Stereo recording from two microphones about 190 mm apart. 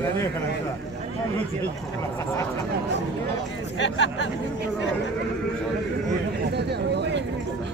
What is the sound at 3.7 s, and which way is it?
Speech, 70° left (ahead or behind).